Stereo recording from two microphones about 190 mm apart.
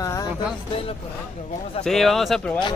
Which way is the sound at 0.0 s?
15° left (ahead or behind).